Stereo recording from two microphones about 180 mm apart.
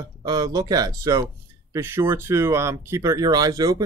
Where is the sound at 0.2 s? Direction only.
20° right (ahead or behind).